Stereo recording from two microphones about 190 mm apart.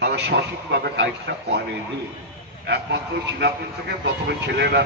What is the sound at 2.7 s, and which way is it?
Speech, 60° right (ahead or behind).